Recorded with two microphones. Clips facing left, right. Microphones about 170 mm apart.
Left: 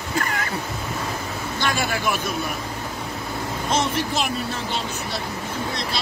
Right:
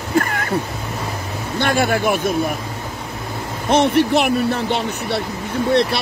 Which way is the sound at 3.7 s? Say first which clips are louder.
Right 10 dB; 65° right (ahead or behind).